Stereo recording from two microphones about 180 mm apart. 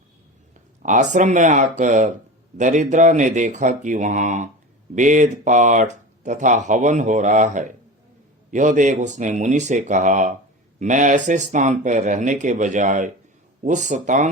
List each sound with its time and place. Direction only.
0.8 s speech: 40° right (ahead or behind)